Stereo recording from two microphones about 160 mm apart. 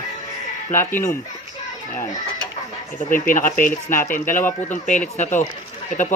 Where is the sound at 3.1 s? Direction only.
55° left (ahead or behind).